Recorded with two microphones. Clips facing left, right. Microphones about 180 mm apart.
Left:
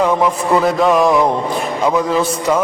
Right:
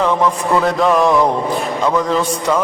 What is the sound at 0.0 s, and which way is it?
Speech, 15° left (ahead or behind).